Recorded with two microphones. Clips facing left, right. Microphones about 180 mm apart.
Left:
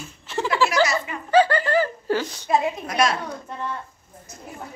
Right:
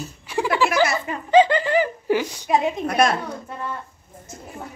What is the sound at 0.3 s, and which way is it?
Giggle, 15° right (ahead or behind).